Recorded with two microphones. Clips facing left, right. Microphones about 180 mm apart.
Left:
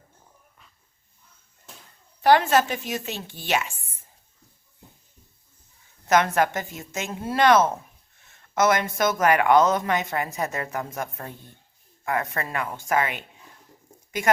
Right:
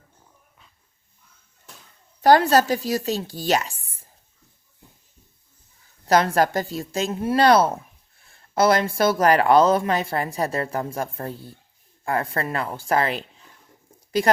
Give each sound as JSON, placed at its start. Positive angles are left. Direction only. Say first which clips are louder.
{"t": 2.2, "sound": "speech", "louder": "right 3 dB", "side_deg": -40}
{"t": 6.1, "sound": "speech", "louder": "right 2 dB", "side_deg": -35}